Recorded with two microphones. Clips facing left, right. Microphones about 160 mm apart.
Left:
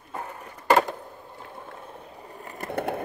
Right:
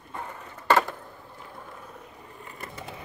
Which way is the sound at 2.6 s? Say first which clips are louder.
Left 14 dB; 60° left (ahead or behind).